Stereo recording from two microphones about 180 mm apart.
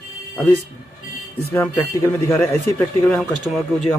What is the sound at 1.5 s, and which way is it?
Speech, 15° left (ahead or behind).